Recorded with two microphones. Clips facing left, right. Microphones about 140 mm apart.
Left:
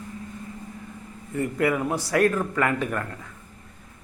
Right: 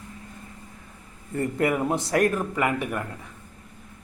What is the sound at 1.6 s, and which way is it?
Speech, 25° right (ahead or behind).